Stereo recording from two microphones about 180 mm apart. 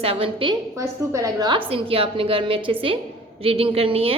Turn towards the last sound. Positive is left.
turn(degrees=-30)  # may be behind; listen again after turning